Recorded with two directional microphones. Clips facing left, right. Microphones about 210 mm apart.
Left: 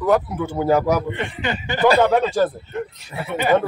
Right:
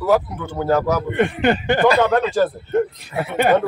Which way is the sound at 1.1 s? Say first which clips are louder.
Right 8 dB; 55° right (ahead or behind).